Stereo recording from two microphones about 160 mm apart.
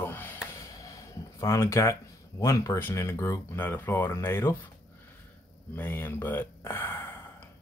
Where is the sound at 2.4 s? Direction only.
20° left (ahead or behind).